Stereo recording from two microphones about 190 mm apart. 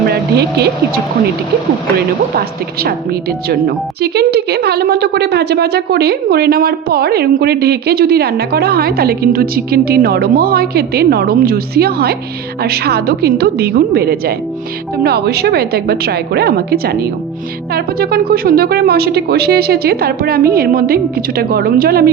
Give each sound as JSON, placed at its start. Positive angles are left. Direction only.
{"t": 0.1, "sound": "speech", "side_deg": -60}
{"t": 2.3, "sound": "a woman's voice", "side_deg": -55}